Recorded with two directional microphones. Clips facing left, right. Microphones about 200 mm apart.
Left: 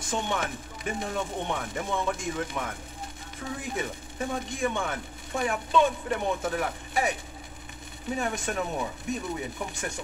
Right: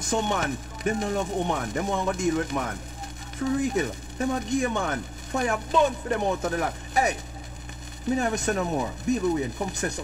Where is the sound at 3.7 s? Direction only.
40° right (ahead or behind).